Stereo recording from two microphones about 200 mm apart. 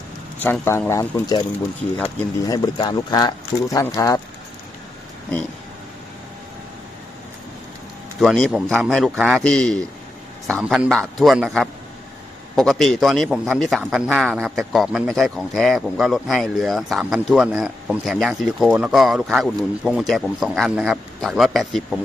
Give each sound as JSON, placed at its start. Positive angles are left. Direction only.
{"t": 0.4, "sound": "speech", "side_deg": 10}
{"t": 2.7, "sound": "speech", "side_deg": 20}
{"t": 8.2, "sound": "a man's voice", "side_deg": 0}